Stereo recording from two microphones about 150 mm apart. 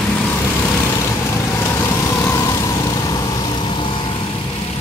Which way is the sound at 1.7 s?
20° left (ahead or behind).